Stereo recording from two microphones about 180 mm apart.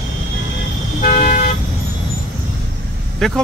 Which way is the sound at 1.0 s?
55° left (ahead or behind).